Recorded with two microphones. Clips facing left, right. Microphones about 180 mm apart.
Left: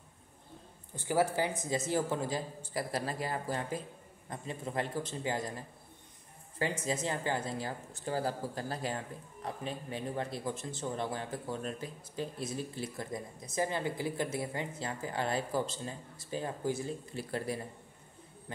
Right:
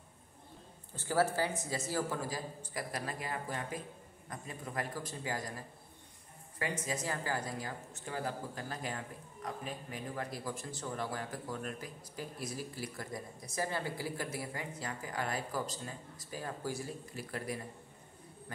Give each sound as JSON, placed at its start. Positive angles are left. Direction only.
{"t": 0.9, "sound": "speech", "side_deg": 15}
{"t": 6.6, "sound": "speech", "side_deg": 30}